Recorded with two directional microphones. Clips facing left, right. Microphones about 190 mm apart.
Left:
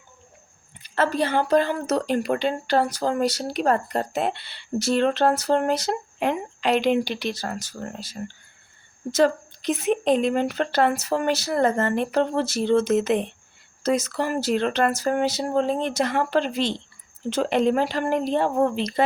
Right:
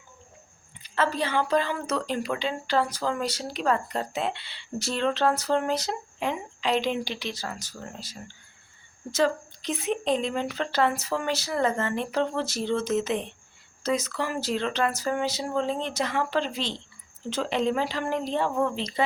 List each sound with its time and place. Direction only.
0.9 s speech: 50° left (ahead or behind)
2.0 s speech: 60° left (ahead or behind)